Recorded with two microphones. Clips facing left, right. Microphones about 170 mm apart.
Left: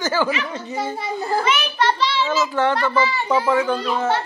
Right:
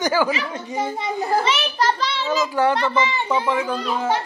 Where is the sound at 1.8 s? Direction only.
45° right (ahead or behind).